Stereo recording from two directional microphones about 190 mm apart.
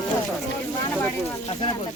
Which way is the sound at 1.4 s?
25° left (ahead or behind).